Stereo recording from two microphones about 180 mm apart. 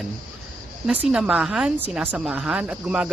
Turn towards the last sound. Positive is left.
turn(degrees=-5)  # may be behind; listen again after turning